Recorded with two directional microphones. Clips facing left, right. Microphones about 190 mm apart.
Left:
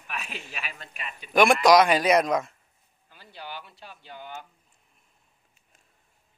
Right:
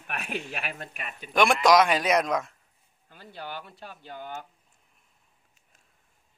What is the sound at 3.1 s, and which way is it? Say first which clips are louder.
Speech: right 2 dB; 50° right (ahead or behind).